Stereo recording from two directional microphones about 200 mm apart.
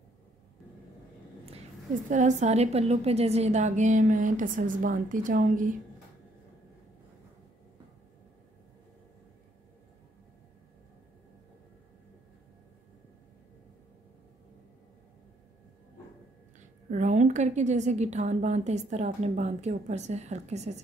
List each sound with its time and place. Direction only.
2.0 s a woman's voice: 35° right (ahead or behind)
16.9 s a woman's voice: 35° right (ahead or behind)